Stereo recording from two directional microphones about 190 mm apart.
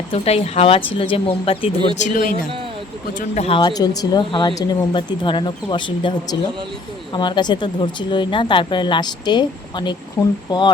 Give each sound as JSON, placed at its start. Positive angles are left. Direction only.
{"t": 0.1, "sound": "speech", "side_deg": 35}
{"t": 2.0, "sound": "speech", "side_deg": 45}
{"t": 3.2, "sound": "speech", "side_deg": 35}